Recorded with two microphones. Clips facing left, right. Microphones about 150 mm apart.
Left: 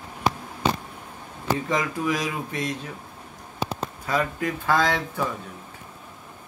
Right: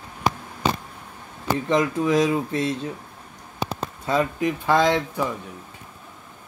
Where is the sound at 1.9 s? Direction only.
25° right (ahead or behind).